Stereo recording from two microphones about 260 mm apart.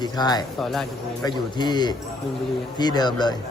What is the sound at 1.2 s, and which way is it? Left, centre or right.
Speech, centre.